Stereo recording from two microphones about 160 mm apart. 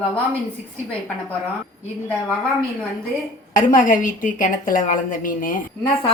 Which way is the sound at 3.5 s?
55° left (ahead or behind).